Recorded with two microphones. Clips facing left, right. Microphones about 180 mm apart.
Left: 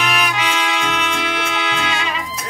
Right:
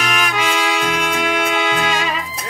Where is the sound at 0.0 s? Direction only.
45° right (ahead or behind).